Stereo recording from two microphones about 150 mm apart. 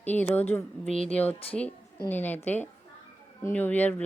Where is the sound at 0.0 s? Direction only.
10° left (ahead or behind).